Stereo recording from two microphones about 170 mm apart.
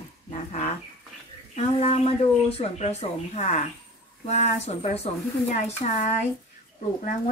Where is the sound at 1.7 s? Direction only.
35° left (ahead or behind).